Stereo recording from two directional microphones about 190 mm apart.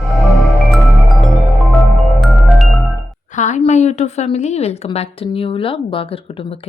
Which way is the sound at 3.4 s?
40° left (ahead or behind).